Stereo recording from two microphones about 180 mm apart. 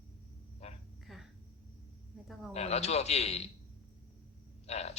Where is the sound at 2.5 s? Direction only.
35° left (ahead or behind).